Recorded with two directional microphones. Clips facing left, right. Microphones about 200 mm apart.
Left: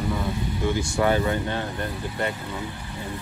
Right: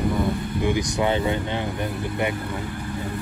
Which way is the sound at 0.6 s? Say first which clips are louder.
Right 1 dB; 15° right (ahead or behind).